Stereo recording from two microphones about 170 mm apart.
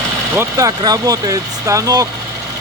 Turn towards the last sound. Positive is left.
turn(degrees=-20)  # may be behind; listen again after turning